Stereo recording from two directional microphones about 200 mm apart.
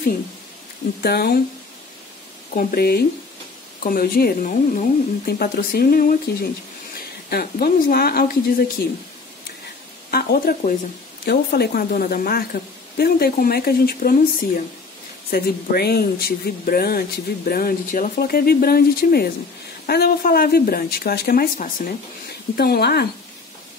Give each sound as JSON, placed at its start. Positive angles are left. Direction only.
{"t": 1.0, "sound": "speech", "side_deg": 50}
{"t": 2.5, "sound": "speech", "side_deg": 50}
{"t": 10.1, "sound": "speech", "side_deg": 50}